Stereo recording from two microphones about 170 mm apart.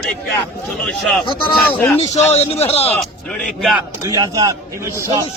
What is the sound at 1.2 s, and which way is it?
A man's voice, 30° left (ahead or behind).